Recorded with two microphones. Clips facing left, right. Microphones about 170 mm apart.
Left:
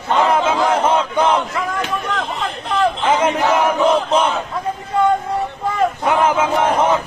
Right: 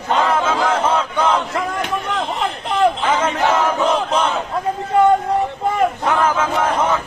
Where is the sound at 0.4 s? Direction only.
10° left (ahead or behind).